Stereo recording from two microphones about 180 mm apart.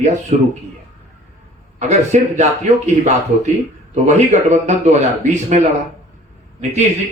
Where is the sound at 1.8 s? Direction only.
40° right (ahead or behind).